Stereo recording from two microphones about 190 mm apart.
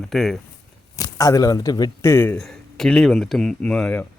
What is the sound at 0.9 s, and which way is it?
Speech, 20° left (ahead or behind).